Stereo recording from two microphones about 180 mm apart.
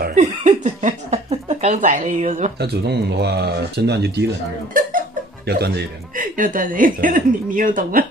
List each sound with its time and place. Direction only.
0.1 s a sound: 40° right (ahead or behind)
2.6 s speech: 65° right (ahead or behind)
5.5 s speech: 65° right (ahead or behind)